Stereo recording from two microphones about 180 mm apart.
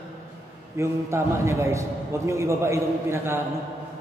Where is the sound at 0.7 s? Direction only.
15° right (ahead or behind).